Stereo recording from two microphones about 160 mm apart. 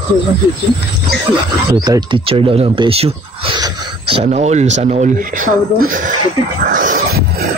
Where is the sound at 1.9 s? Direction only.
30° right (ahead or behind); by 6.1 s 60° right (ahead or behind).